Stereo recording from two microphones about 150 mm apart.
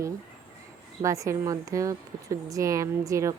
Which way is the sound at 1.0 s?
20° right (ahead or behind).